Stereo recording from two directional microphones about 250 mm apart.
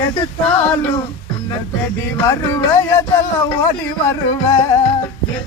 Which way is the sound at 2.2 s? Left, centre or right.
Centre.